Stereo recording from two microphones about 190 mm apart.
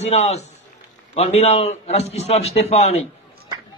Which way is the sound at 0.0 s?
35° left (ahead or behind).